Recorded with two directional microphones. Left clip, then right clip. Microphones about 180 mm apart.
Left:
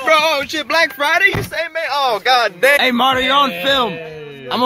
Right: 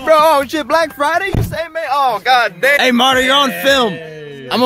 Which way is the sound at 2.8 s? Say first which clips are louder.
Right 3 dB; 10° right (ahead or behind).